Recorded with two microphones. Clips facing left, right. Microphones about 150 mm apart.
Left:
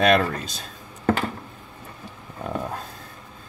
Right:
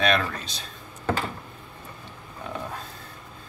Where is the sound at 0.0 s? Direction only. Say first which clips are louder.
Left 5 dB; 45° left (ahead or behind).